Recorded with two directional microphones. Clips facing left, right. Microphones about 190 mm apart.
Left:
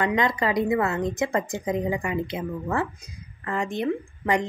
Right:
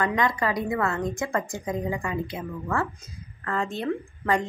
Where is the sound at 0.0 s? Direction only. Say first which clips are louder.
Left 1 dB; 25° left (ahead or behind).